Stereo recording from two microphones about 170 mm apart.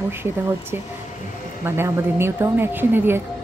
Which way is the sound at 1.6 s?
15° right (ahead or behind).